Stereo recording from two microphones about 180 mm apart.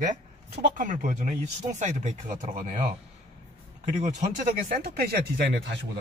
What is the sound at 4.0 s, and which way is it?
A man's voice, 45° right (ahead or behind).